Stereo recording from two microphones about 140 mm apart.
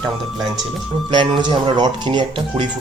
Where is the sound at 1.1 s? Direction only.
35° right (ahead or behind).